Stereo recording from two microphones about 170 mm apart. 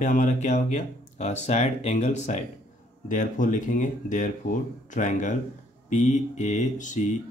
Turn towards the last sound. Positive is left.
turn(degrees=45)  # may be behind; listen again after turning